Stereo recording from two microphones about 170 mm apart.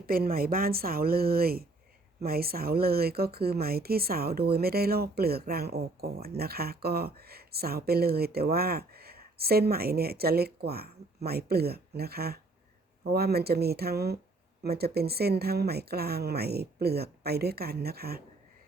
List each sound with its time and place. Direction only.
0.0 s speech: 60° right (ahead or behind)